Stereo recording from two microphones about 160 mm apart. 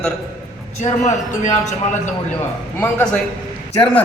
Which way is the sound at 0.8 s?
50° left (ahead or behind).